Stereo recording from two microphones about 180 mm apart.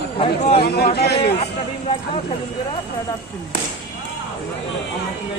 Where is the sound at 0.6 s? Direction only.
60° left (ahead or behind).